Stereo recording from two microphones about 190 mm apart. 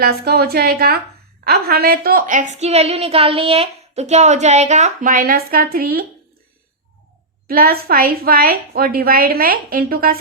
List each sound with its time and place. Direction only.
0.0 s a woman's voice: 55° right (ahead or behind)
7.4 s a woman's voice: 50° right (ahead or behind)